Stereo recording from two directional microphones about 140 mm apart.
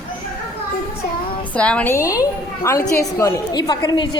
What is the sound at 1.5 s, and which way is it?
Speech, 10° left (ahead or behind).